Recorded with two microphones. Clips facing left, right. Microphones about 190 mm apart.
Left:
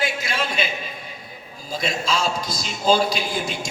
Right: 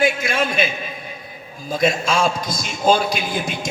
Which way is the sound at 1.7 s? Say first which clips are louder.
Right 6 dB; 50° right (ahead or behind).